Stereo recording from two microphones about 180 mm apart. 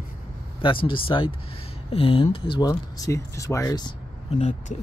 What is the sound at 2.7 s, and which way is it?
Speech, 15° left (ahead or behind).